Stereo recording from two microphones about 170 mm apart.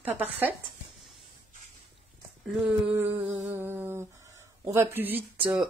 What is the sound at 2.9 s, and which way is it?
Speech, 15° right (ahead or behind).